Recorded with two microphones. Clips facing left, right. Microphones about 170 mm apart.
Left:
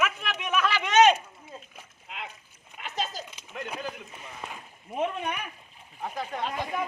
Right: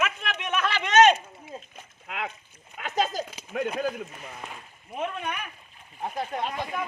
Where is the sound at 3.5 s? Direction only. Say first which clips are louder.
Right 9 dB; 60° right (ahead or behind).